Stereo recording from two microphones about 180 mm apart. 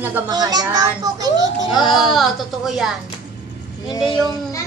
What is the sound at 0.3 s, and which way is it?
Speech, 20° right (ahead or behind).